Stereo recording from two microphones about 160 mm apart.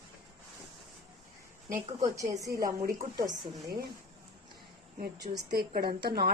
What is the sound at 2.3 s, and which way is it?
Speech, 20° right (ahead or behind).